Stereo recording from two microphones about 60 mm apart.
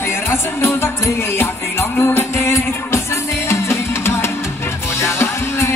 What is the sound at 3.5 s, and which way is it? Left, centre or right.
Music, left.